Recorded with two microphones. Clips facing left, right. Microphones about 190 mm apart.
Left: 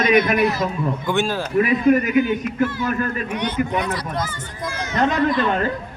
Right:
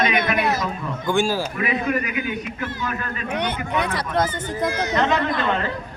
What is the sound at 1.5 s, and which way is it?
A man's voice, 45° left (ahead or behind).